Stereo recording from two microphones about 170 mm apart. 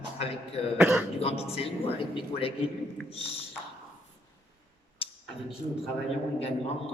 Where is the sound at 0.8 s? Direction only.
10° right (ahead or behind).